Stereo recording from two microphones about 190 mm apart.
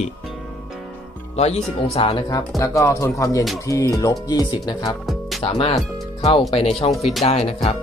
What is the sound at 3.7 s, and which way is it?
Speech, 15° left (ahead or behind).